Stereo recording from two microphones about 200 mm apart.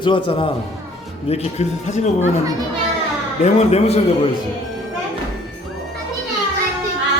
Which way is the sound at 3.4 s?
30° left (ahead or behind).